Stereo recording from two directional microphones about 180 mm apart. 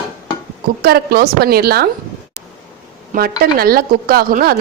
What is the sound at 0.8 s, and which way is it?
A woman's voice, 60° right (ahead or behind).